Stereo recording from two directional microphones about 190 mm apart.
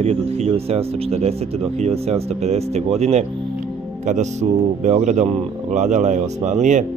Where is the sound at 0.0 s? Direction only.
35° right (ahead or behind).